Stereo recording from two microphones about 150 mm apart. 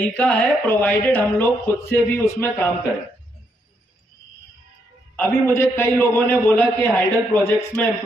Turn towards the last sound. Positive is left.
turn(degrees=15)  # may be behind; listen again after turning